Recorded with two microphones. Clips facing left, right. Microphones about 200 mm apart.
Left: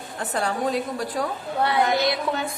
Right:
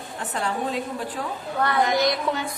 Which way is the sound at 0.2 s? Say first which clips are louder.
Left 2 dB; 40° left (ahead or behind).